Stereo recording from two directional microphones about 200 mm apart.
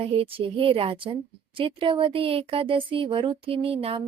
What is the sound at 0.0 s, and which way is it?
Speech, 30° right (ahead or behind).